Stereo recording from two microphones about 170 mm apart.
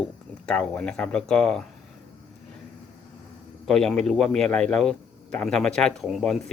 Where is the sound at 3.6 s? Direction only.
5° left (ahead or behind).